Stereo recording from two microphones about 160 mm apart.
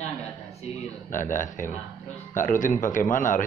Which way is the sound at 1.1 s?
55° left (ahead or behind).